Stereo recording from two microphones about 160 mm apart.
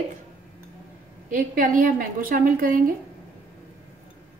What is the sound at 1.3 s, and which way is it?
A woman's voice, 60° right (ahead or behind).